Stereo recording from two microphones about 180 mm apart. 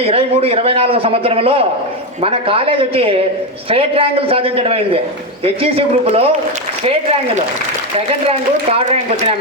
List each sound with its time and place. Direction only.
0.0 s a man's voice: 30° right (ahead or behind)